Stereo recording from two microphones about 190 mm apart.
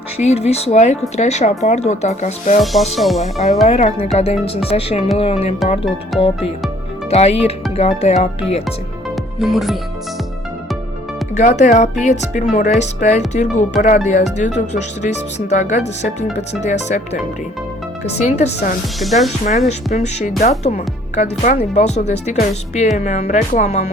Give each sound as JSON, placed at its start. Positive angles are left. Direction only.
{"t": 0.2, "sound": "speech", "side_deg": 35}
{"t": 2.9, "sound": "speech", "side_deg": 0}
{"t": 3.6, "sound": "speech", "side_deg": 35}
{"t": 6.1, "sound": "music", "side_deg": 30}
{"t": 7.1, "sound": "speech", "side_deg": 35}
{"t": 9.4, "sound": "speech", "side_deg": 0}
{"t": 11.3, "sound": "speech", "side_deg": 40}
{"t": 18.3, "sound": "speech", "side_deg": 35}
{"t": 18.9, "sound": "speech", "side_deg": 0}
{"t": 19.5, "sound": "speech", "side_deg": 35}